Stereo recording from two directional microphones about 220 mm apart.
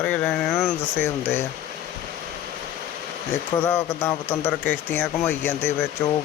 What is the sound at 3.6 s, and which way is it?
Speech, 10° left (ahead or behind).